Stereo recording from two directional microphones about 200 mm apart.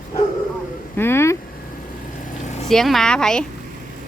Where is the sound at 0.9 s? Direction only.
10° left (ahead or behind).